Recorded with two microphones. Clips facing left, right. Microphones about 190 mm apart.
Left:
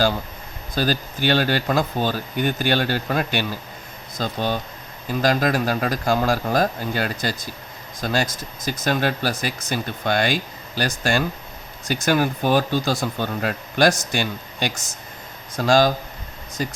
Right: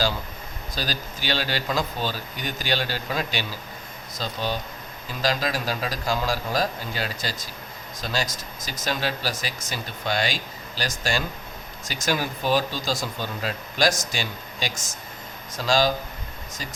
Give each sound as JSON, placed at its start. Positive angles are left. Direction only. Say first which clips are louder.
{"t": 0.8, "sound": "speech", "louder": "left 9 dB", "side_deg": 55}